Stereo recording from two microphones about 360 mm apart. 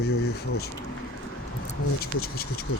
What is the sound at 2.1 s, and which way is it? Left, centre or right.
Speech, left.